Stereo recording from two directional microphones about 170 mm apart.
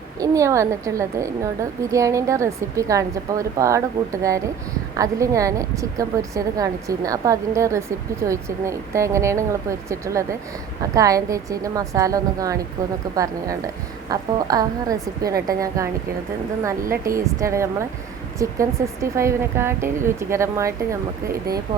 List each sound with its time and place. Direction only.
0.2 s a woman's voice: 20° right (ahead or behind)
17.2 s a woman's voice: 15° right (ahead or behind)